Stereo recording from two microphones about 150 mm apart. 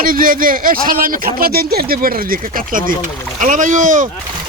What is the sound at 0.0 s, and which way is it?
Speech, 70° right (ahead or behind).